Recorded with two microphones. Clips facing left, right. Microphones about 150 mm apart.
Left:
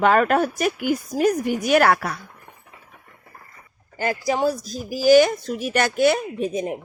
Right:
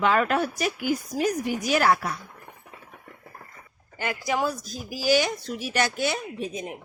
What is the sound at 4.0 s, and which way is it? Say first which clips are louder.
Speech: left 5 dB; 35° left (ahead or behind).